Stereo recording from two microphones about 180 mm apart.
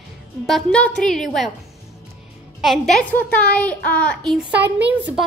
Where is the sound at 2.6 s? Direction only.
Centre (ahead or behind).